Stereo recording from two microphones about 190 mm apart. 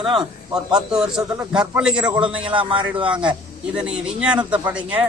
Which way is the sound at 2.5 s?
25° right (ahead or behind).